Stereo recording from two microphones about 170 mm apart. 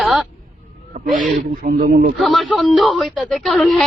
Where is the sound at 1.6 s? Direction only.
55° right (ahead or behind).